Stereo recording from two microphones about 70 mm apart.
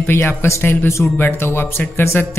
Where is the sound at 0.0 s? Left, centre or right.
Left.